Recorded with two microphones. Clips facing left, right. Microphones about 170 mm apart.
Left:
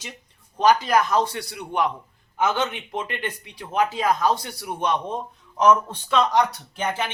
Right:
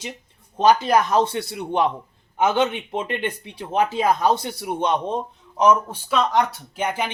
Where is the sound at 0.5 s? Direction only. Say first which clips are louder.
Right 2 dB; 25° right (ahead or behind).